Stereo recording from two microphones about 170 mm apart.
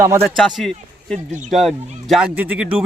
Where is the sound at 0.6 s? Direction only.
5° left (ahead or behind).